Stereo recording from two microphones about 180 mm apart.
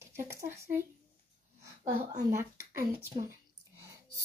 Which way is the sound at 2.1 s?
20° right (ahead or behind).